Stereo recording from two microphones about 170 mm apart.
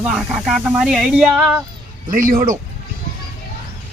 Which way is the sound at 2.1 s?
55° right (ahead or behind).